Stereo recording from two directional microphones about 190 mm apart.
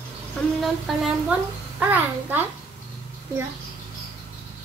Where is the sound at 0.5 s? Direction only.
Centre (ahead or behind).